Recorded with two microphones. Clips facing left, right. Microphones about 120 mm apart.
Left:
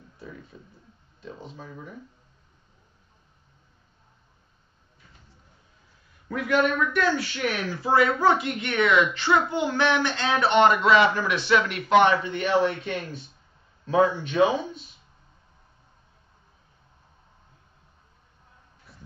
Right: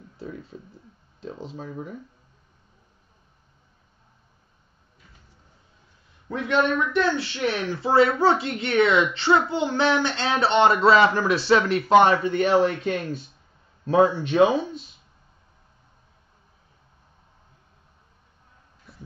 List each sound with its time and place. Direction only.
0.5 s a man's voice: 30° right (ahead or behind)
6.2 s a man's voice: 25° right (ahead or behind)
13.8 s a man's voice: 30° right (ahead or behind)
18.9 s a sound: centre (ahead or behind)